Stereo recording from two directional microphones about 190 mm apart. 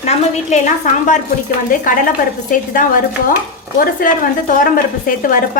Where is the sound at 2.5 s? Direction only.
45° left (ahead or behind).